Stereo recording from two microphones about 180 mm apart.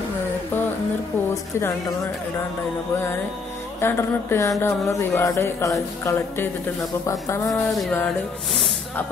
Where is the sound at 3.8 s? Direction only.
15° left (ahead or behind).